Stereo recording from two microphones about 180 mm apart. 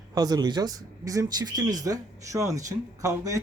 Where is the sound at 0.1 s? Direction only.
20° right (ahead or behind).